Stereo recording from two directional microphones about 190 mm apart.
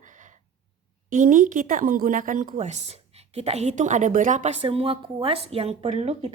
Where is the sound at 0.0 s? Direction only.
40° right (ahead or behind).